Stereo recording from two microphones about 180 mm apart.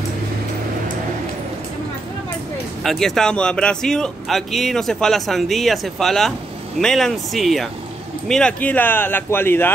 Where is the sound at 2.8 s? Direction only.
Centre (ahead or behind).